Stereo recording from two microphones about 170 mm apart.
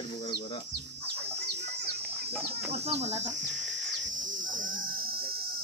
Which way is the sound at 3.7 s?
45° right (ahead or behind).